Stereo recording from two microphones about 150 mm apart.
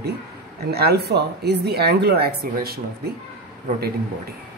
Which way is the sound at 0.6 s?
90° right.